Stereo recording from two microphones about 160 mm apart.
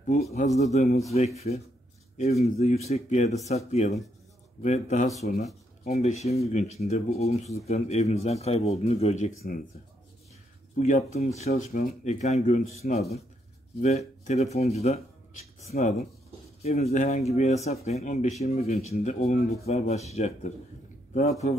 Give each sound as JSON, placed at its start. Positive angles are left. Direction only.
{"t": 0.0, "sound": "a man's voice", "side_deg": 40}
{"t": 10.8, "sound": "speech", "side_deg": 50}
{"t": 13.7, "sound": "speech", "side_deg": 45}
{"t": 15.7, "sound": "speech", "side_deg": 60}
{"t": 16.6, "sound": "speech", "side_deg": 45}